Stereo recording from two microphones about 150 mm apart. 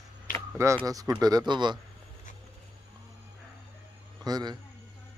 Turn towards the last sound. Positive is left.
turn(degrees=-25)  # may be behind; listen again after turning